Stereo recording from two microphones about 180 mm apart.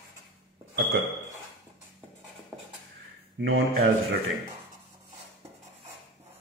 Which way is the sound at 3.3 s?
90° right.